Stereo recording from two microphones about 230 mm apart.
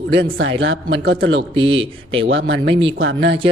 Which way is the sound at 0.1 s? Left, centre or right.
Right.